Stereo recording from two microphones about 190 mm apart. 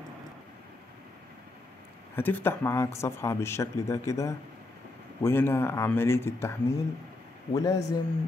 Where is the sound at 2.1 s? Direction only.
10° left (ahead or behind).